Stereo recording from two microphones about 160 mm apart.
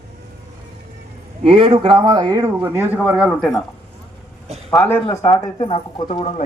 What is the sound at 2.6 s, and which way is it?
Speech, 10° right (ahead or behind).